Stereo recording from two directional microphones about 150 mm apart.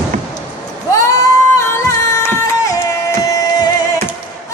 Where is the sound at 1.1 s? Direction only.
20° left (ahead or behind).